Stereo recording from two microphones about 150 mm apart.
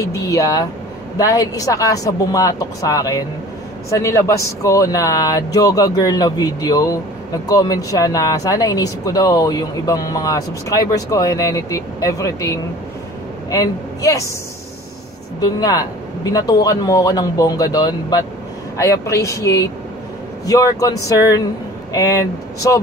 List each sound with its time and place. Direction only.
0.0 s speech: 20° left (ahead or behind)
15.4 s speech: 25° left (ahead or behind)